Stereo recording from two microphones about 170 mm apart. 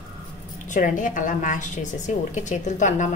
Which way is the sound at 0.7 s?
50° left (ahead or behind).